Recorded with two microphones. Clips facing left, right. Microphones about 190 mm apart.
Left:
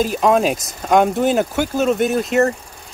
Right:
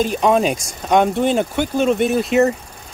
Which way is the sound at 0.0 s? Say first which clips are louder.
Even; 5° left (ahead or behind).